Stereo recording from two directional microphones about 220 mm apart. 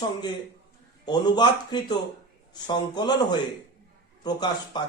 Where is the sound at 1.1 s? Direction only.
20° left (ahead or behind).